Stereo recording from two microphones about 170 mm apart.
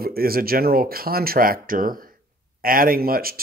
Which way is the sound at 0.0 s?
60° right (ahead or behind).